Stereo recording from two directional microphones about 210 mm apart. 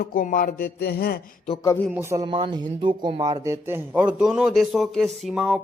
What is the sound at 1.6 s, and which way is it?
Speech, 15° left (ahead or behind).